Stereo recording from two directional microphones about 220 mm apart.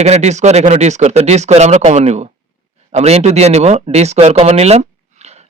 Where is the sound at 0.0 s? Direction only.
30° right (ahead or behind).